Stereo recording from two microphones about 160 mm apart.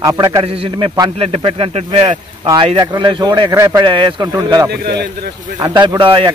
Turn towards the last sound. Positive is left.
turn(degrees=-30)  # may be behind; listen again after turning